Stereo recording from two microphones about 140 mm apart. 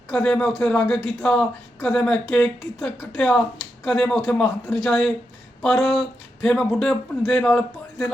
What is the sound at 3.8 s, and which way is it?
A man's voice, centre (ahead or behind).